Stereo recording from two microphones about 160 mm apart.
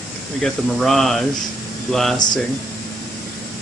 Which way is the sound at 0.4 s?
Centre (ahead or behind).